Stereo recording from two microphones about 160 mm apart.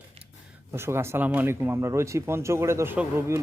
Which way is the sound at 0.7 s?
15° right (ahead or behind).